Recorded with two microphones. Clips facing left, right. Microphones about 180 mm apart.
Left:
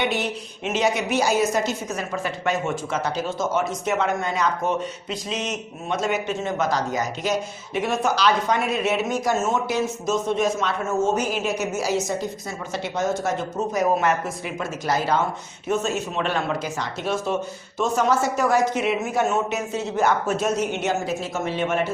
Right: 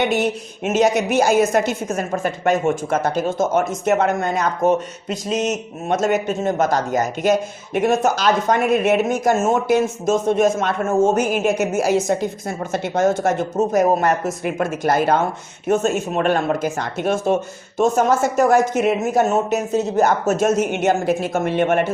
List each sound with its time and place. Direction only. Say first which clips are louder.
0.0 s a woman's voice: right 6 dB; 45° right (ahead or behind)
14.4 s a woman's voice: right 7 dB; 55° right (ahead or behind)